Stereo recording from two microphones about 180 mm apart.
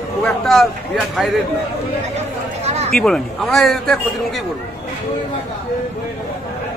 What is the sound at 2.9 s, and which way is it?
A man's voice, 5° left (ahead or behind).